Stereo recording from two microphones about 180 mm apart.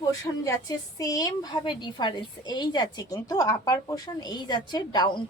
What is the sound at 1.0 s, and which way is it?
A woman's voice, 20° left (ahead or behind).